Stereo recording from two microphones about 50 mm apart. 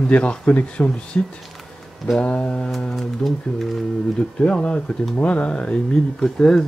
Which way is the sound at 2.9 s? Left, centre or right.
Centre.